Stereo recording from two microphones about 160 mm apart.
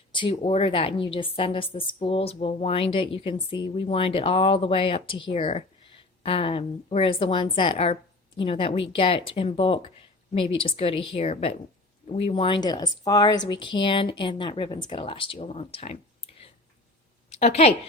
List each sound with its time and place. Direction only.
0.1 s a woman's voice: 30° left (ahead or behind)
17.2 s a woman's voice: 40° left (ahead or behind)